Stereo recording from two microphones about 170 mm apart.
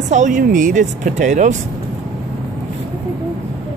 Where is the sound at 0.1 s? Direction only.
50° right (ahead or behind).